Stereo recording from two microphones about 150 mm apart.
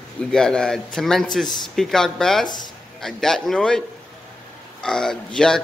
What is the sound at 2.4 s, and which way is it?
Speech, 30° left (ahead or behind).